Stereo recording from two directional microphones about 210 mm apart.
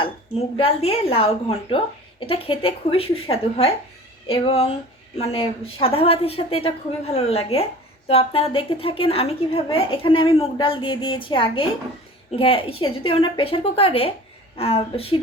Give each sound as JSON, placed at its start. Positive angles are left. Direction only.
{"t": 0.0, "sound": "a woman's voice", "side_deg": 25}